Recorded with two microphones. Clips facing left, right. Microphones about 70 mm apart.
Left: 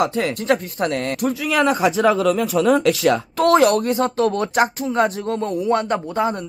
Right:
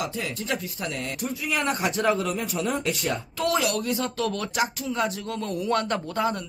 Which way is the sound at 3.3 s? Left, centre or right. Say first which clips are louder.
Left 10 dB; left.